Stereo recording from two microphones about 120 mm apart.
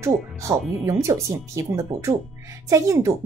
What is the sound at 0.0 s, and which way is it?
Speech, 25° right (ahead or behind).